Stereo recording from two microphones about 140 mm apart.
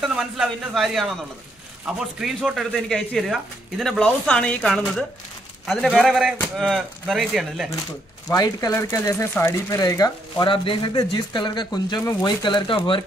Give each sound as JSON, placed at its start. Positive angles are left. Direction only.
{"t": 0.0, "sound": "speech", "side_deg": 0}
{"t": 4.0, "sound": "speech", "side_deg": 10}
{"t": 8.3, "sound": "speech", "side_deg": 25}
{"t": 12.0, "sound": "speech", "side_deg": 20}